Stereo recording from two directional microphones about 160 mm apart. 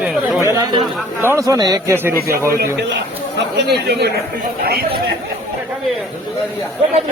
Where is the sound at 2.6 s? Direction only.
90° right.